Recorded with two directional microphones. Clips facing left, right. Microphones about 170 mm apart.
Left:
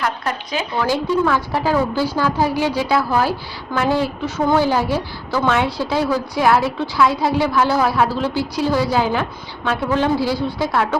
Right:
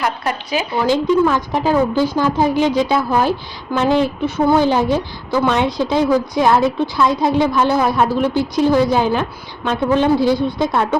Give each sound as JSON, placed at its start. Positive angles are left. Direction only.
{"t": 0.0, "sound": "a woman's voice", "side_deg": -10}